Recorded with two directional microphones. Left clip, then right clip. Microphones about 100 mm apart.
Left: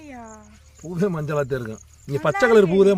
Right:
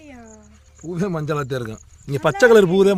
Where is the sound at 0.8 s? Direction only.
90° right.